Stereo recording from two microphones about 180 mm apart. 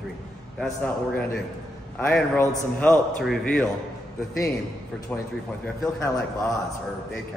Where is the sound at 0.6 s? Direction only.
5° left (ahead or behind).